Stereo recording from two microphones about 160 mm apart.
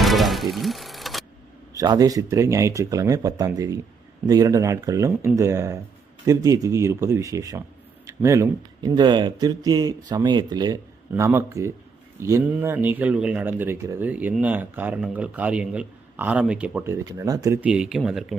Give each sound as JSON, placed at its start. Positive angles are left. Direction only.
{"t": 0.0, "sound": "music", "side_deg": 0}
{"t": 1.7, "sound": "speech", "side_deg": -20}
{"t": 11.1, "sound": "a man's voice", "side_deg": -15}
{"t": 17.7, "sound": "speech", "side_deg": -5}